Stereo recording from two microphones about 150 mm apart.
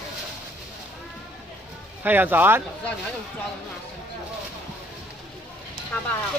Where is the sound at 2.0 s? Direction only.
10° right (ahead or behind).